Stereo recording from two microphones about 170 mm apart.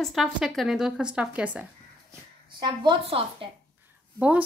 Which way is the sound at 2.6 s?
25° right (ahead or behind).